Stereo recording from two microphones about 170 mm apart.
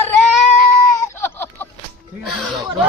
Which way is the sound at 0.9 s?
15° left (ahead or behind).